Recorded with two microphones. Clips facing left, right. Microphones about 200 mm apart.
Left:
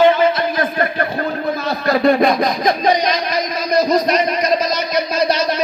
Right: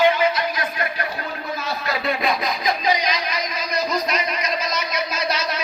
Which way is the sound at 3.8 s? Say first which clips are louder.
Left 8 dB; 40° left (ahead or behind).